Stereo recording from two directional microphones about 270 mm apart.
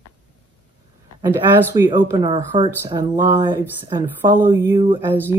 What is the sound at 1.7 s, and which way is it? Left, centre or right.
Speech, centre.